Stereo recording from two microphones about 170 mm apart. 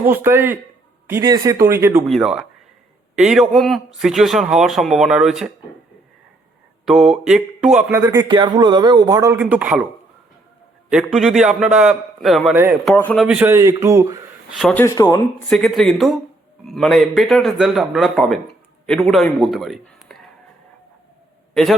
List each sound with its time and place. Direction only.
0.0 s speech: 10° right (ahead or behind)
2.0 s speech: centre (ahead or behind)
6.8 s speech: centre (ahead or behind)
10.9 s speech: centre (ahead or behind)
13.2 s speech: 10° right (ahead or behind)
14.5 s speech: 5° left (ahead or behind)
14.9 s speech: 20° left (ahead or behind)
15.4 s a man's voice: centre (ahead or behind)
21.5 s a man's voice: centre (ahead or behind)